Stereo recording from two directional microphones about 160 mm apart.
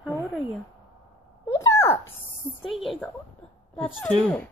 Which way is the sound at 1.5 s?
15° left (ahead or behind).